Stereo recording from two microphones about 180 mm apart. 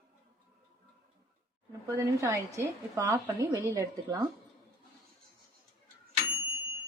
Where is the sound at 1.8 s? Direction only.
15° right (ahead or behind).